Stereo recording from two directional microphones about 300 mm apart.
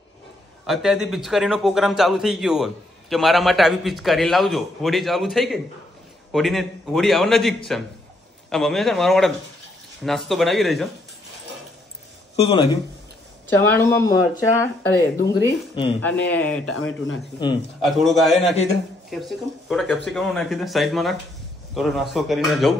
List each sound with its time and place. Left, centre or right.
0.7 s a man's voice: centre
12.4 s a man's voice: centre
16.1 s a man's voice: centre
16.7 s speech: left
17.8 s a man's voice: centre